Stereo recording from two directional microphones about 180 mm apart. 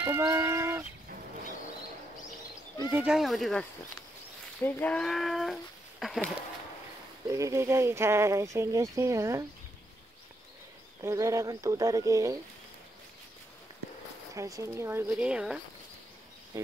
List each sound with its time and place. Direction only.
0.0 s speech: 15° right (ahead or behind)
2.9 s speech: 5° right (ahead or behind)
4.6 s speech: 10° left (ahead or behind)
7.2 s speech: 15° right (ahead or behind)
11.0 s speech: 15° right (ahead or behind)
14.3 s speech: 15° right (ahead or behind)
16.5 s speech: 15° right (ahead or behind)